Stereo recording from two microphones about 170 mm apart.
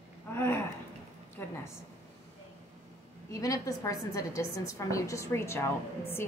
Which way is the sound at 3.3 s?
20° left (ahead or behind).